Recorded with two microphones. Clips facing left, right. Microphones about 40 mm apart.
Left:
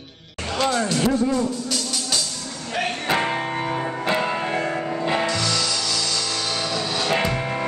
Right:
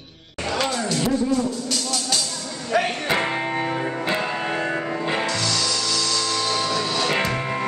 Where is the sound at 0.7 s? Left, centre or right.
Centre.